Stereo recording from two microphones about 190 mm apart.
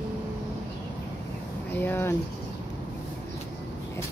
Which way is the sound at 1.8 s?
10° left (ahead or behind).